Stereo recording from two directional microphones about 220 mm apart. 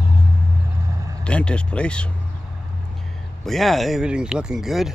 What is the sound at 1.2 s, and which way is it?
Speech, 5° left (ahead or behind).